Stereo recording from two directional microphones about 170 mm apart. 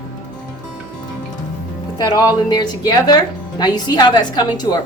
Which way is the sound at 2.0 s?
20° left (ahead or behind).